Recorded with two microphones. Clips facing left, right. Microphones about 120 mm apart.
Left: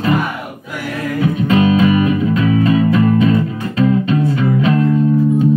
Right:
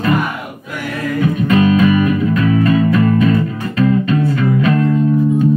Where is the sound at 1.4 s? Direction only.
25° left (ahead or behind).